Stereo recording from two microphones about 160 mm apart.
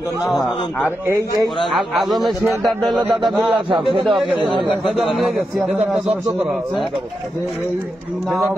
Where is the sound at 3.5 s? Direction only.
30° right (ahead or behind).